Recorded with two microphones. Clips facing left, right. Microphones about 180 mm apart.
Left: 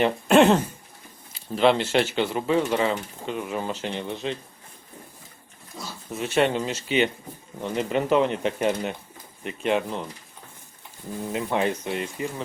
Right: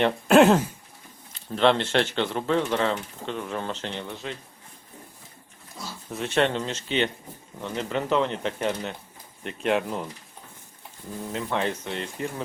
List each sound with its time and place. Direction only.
0.0 s speech: centre (ahead or behind); by 4.4 s 20° left (ahead or behind)
6.1 s speech: 5° left (ahead or behind)
9.4 s speech: centre (ahead or behind)
11.3 s speech: 15° left (ahead or behind)